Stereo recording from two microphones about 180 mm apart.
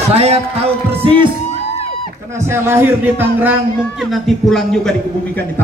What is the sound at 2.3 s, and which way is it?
Speech, 15° right (ahead or behind).